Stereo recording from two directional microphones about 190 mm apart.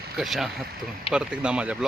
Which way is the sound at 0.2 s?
Centre (ahead or behind).